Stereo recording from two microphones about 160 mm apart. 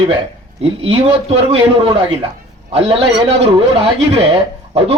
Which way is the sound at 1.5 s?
35° right (ahead or behind).